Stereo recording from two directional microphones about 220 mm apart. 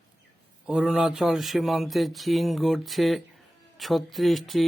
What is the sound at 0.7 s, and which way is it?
Speech, 5° right (ahead or behind).